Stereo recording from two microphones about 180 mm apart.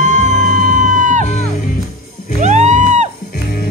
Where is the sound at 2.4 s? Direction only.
40° right (ahead or behind).